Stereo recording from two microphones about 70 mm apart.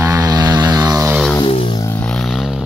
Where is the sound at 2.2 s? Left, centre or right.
Centre.